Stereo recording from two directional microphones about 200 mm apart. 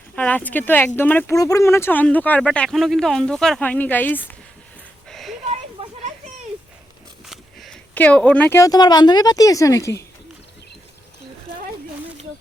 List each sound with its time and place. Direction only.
0.2 s speech: 10° left (ahead or behind)
5.0 s a sound: centre (ahead or behind)
5.8 s children playing: 30° right (ahead or behind)
7.3 s speech: centre (ahead or behind)